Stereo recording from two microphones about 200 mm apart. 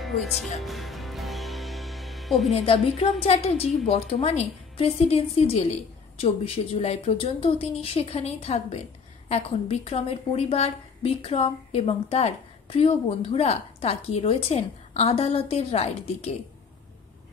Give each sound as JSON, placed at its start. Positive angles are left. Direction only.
{"t": 0.0, "sound": "speech", "side_deg": 0}
{"t": 0.6, "sound": "music", "side_deg": 0}
{"t": 2.5, "sound": "a woman's voice", "side_deg": 30}